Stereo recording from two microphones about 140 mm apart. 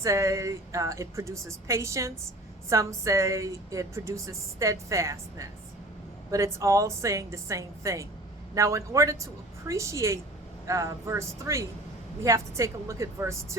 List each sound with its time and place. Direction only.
0.0 s speech: 20° right (ahead or behind)